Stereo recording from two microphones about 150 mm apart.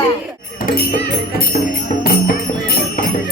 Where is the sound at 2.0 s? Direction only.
85° left.